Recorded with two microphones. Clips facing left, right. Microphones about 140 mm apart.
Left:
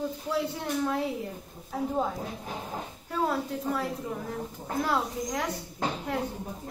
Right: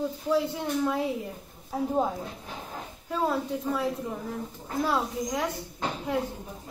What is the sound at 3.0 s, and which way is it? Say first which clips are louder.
A woman's voice: right 1 dB; 5° right (ahead or behind).